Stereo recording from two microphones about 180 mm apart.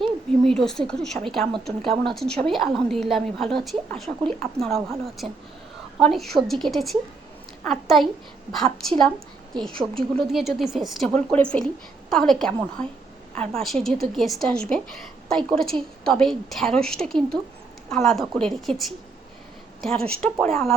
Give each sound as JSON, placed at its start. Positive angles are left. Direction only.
{"t": 0.4, "sound": "a woman's voice", "side_deg": 0}
{"t": 9.5, "sound": "a woman's voice", "side_deg": -25}
{"t": 9.9, "sound": "a woman's voice", "side_deg": 0}